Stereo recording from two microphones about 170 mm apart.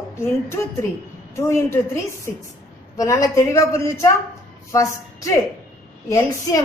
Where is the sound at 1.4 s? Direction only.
15° left (ahead or behind).